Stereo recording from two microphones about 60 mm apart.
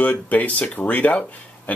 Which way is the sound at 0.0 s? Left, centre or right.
Left.